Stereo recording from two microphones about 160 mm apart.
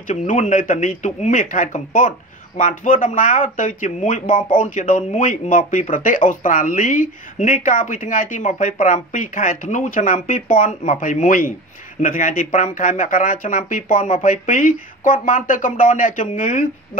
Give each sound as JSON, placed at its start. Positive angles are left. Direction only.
{"t": 0.0, "sound": "speech", "side_deg": 50}